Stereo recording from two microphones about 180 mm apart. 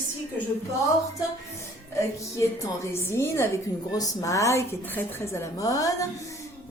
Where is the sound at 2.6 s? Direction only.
15° left (ahead or behind).